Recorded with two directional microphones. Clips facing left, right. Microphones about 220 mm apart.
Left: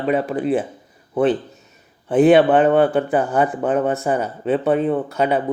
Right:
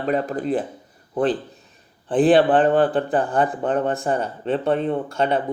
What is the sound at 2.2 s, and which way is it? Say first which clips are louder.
Speech: left 3 dB; 35° right (ahead or behind).